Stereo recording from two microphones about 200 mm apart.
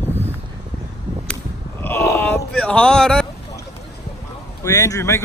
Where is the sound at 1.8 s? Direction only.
10° left (ahead or behind).